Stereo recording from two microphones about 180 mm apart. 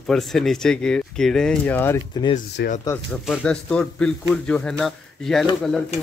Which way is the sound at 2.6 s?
70° left (ahead or behind).